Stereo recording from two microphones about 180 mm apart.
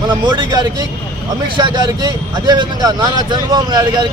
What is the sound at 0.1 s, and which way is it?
Speech, 25° right (ahead or behind).